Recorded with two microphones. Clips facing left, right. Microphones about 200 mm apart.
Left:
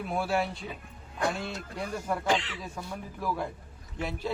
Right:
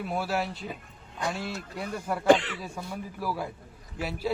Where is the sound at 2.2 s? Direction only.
50° right (ahead or behind).